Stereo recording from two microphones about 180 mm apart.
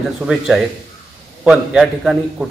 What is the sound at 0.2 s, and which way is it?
A man's voice, 5° right (ahead or behind).